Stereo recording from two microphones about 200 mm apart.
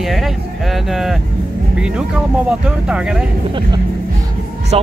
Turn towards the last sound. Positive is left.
turn(degrees=-30)  # may be behind; listen again after turning